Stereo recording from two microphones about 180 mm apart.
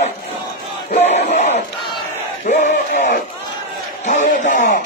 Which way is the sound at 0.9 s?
40° left (ahead or behind).